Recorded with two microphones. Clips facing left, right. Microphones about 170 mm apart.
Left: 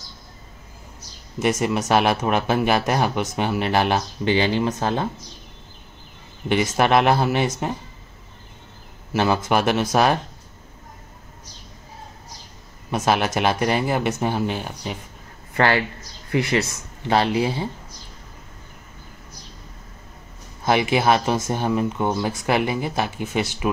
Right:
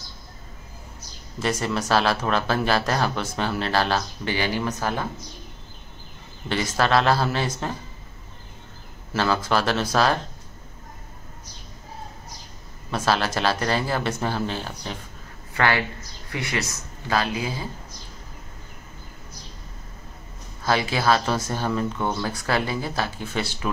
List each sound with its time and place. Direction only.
1.4 s speech: 15° left (ahead or behind)
6.5 s speech: 20° left (ahead or behind)
9.1 s speech: 20° left (ahead or behind)
12.9 s speech: 20° left (ahead or behind)
15.5 s speech: 30° left (ahead or behind)
16.3 s speech: 60° left (ahead or behind)
17.1 s speech: 30° left (ahead or behind)
20.6 s speech: 20° left (ahead or behind)